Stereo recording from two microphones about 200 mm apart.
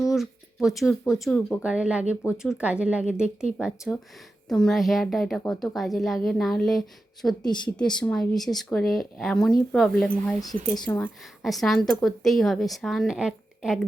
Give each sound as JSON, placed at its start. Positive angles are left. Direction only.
{"t": 0.1, "sound": "speech", "side_deg": 0}
{"t": 7.4, "sound": "speech", "side_deg": 20}
{"t": 7.8, "sound": "speech", "side_deg": 5}